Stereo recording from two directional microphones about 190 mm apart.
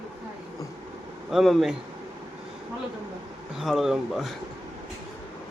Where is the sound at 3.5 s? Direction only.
Centre (ahead or behind).